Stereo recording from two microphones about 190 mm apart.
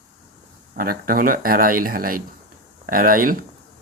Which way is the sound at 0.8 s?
50° right (ahead or behind).